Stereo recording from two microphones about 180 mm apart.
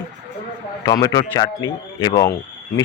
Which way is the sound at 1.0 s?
20° left (ahead or behind).